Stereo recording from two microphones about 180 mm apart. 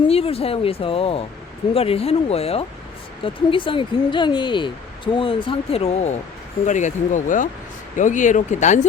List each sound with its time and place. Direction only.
0.1 s speech: 35° left (ahead or behind)